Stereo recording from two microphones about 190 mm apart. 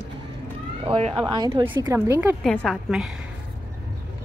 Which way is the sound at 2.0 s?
10° right (ahead or behind).